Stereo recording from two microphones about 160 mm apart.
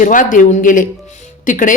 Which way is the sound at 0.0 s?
55° left (ahead or behind).